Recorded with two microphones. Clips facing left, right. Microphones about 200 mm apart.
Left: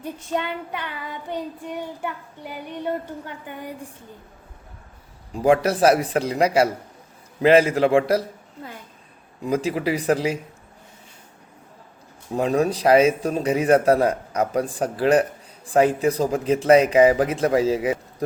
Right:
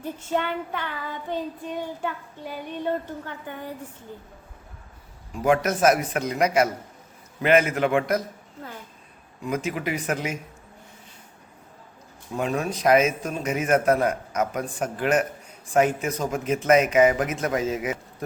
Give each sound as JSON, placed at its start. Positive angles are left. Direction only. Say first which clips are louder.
{"t": 0.0, "sound": "child singing", "louder": "even", "side_deg": 15}
{"t": 5.3, "sound": "speech", "louder": "left 4 dB", "side_deg": 35}
{"t": 9.5, "sound": "speech", "louder": "left 5 dB", "side_deg": 35}
{"t": 12.3, "sound": "speech", "louder": "left 6 dB", "side_deg": 35}